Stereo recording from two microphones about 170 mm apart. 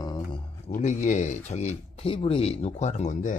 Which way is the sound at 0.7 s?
45° left (ahead or behind).